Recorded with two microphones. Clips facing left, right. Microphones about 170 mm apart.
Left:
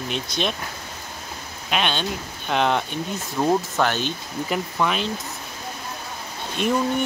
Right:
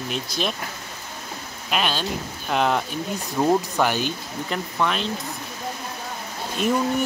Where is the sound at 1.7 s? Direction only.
Centre (ahead or behind).